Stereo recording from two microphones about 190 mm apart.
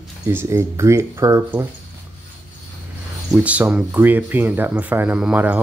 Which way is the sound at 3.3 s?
5° right (ahead or behind).